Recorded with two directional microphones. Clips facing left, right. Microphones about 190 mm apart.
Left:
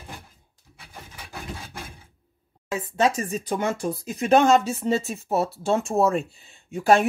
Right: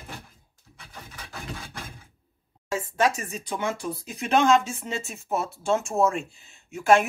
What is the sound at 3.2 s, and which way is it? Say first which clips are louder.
Speech: left 4 dB; 40° left (ahead or behind).